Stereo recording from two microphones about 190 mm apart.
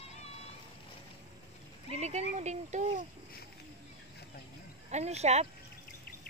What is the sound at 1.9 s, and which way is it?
A woman's voice, 35° right (ahead or behind).